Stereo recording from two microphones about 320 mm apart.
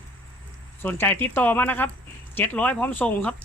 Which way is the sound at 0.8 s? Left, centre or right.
Centre.